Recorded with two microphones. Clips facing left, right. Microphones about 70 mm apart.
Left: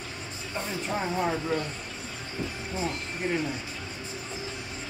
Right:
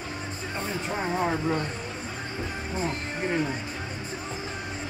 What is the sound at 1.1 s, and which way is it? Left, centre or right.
Speech, right.